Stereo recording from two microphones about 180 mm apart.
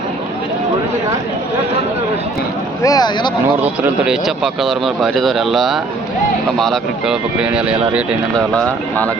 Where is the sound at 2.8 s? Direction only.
20° left (ahead or behind).